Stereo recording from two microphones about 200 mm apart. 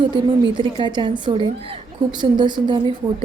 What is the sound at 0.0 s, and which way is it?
A woman's voice, 25° right (ahead or behind).